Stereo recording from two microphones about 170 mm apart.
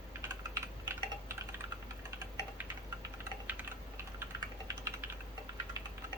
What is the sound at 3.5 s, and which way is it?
Typing, 10° right (ahead or behind).